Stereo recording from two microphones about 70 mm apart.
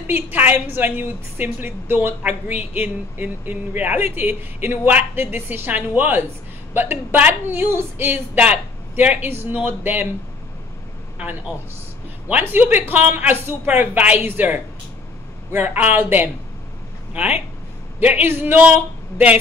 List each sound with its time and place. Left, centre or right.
0.0 s speech: right
11.1 s speech: centre